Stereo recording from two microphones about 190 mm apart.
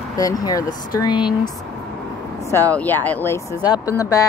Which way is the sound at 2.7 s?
10° left (ahead or behind).